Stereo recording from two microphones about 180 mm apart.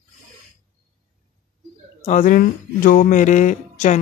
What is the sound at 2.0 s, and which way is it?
Speech, 45° left (ahead or behind).